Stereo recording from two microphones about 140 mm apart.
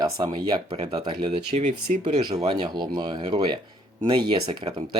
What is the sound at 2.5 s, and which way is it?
Speech, 30° right (ahead or behind).